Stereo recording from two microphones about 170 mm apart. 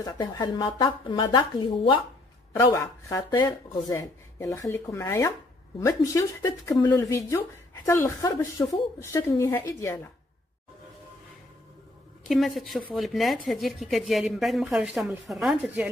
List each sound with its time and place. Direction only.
0.0 s speech: 25° left (ahead or behind)
12.3 s a woman's voice: centre (ahead or behind)